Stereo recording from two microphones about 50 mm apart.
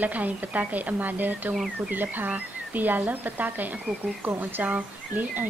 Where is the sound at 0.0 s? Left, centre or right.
Right.